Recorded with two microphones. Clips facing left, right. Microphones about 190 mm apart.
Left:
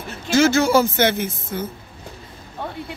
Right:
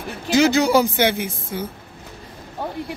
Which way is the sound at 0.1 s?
15° right (ahead or behind).